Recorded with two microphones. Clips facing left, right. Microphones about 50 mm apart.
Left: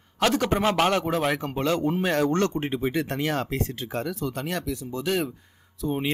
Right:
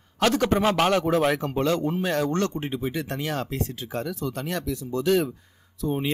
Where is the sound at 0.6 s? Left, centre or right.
Centre.